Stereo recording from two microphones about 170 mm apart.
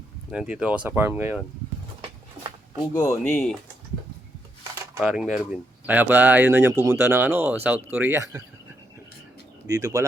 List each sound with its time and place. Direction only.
0.3 s speech: 5° right (ahead or behind)
2.9 s speech: 20° left (ahead or behind)
3.3 s speech: 5° left (ahead or behind)
4.9 s speech: 5° right (ahead or behind); by 8.4 s 20° right (ahead or behind)
9.6 s speech: 20° right (ahead or behind)